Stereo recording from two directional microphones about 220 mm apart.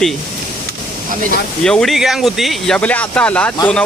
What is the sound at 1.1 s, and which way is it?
Speech, 35° right (ahead or behind).